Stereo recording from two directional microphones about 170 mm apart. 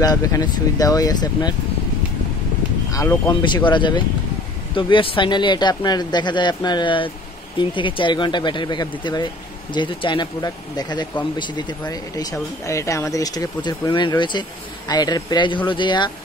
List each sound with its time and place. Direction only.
0.0 s speech: 20° left (ahead or behind)
2.9 s speech: 20° left (ahead or behind)